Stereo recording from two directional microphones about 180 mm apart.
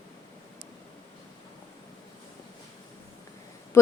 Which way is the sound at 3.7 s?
15° left (ahead or behind).